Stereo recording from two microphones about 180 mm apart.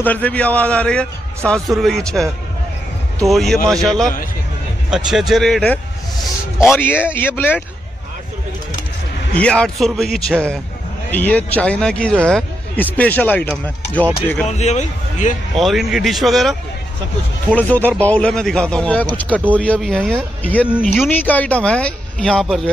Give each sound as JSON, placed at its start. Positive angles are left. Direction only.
{"t": 0.0, "sound": "a man's voice", "side_deg": 10}
{"t": 3.3, "sound": "a man's voice", "side_deg": 0}
{"t": 9.4, "sound": "a man's voice", "side_deg": 5}
{"t": 14.5, "sound": "speech", "side_deg": 40}
{"t": 15.5, "sound": "a man's voice", "side_deg": 0}